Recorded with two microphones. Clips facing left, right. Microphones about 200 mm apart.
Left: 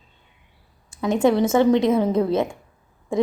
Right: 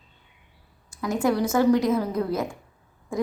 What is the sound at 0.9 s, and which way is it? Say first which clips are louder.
A woman's voice: left 5 dB; 25° left (ahead or behind).